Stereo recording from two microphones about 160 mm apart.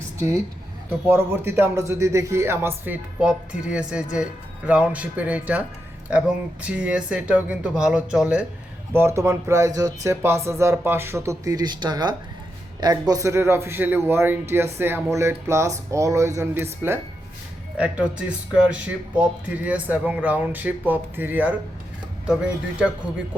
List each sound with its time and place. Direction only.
0.2 s a woman's voice: 20° right (ahead or behind)
17.7 s a man's voice: 5° right (ahead or behind)